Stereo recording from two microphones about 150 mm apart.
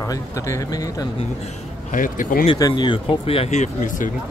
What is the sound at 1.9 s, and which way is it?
Speech, 65° left (ahead or behind).